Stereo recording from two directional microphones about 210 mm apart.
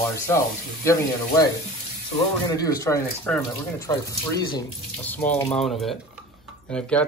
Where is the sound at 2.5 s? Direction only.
15° left (ahead or behind).